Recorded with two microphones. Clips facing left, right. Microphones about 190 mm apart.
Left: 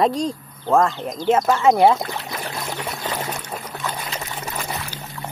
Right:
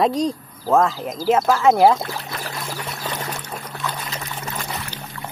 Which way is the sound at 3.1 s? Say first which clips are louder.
Left 2 dB; 10° left (ahead or behind).